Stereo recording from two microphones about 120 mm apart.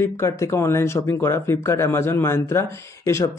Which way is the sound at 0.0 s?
20° left (ahead or behind).